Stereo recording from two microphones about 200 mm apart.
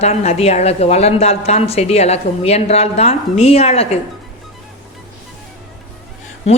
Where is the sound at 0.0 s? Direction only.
35° left (ahead or behind).